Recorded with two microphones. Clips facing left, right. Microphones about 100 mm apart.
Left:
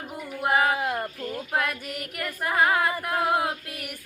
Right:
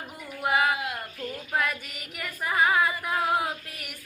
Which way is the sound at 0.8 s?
45° left (ahead or behind).